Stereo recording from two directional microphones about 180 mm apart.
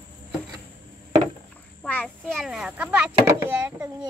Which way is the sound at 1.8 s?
5° left (ahead or behind).